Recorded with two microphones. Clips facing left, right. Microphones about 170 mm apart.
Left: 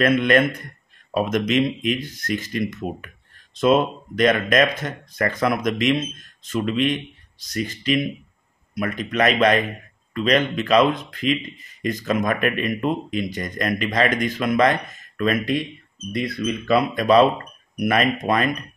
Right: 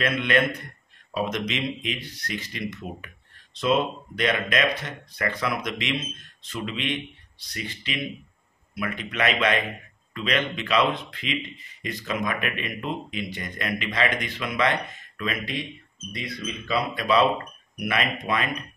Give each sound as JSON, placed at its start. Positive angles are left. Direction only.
{"t": 0.0, "sound": "a man's voice", "side_deg": 45}